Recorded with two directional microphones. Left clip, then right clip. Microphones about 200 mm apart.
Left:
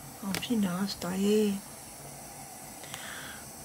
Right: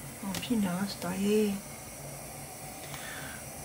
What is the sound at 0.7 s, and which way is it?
Speech, 15° left (ahead or behind).